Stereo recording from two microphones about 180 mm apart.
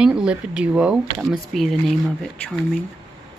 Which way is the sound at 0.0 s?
5° right (ahead or behind).